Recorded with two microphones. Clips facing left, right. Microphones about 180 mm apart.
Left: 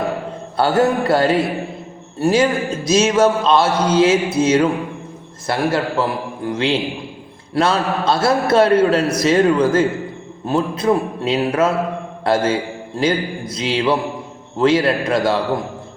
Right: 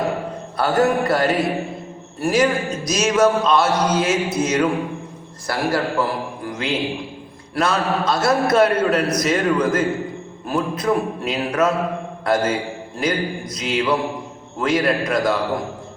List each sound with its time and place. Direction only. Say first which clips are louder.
0.5 s a man's voice: left 2 dB; 30° left (ahead or behind)